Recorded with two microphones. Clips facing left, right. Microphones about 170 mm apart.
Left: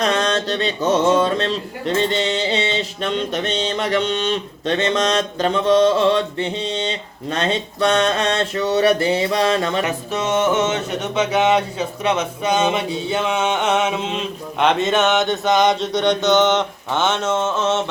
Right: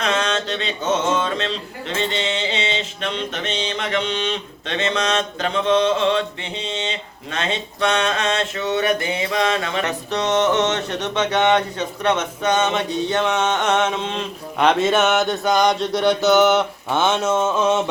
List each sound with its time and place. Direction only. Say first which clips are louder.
0.0 s speech: left 3 dB; 35° left (ahead or behind)
1.1 s mantra: left 5 dB; 40° left (ahead or behind)
9.8 s a sound: even; 10° left (ahead or behind)
14.6 s mantra: even; 5° right (ahead or behind)